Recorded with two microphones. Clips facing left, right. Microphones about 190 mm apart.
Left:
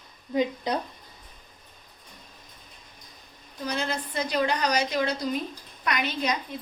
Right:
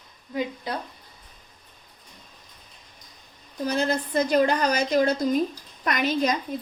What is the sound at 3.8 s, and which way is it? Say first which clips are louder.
A woman's voice: right 7 dB; 45° right (ahead or behind).